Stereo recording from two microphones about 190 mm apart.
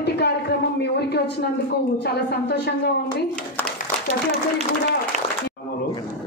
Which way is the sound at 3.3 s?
5° left (ahead or behind).